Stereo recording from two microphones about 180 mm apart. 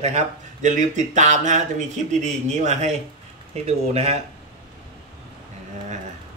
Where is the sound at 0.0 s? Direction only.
40° right (ahead or behind).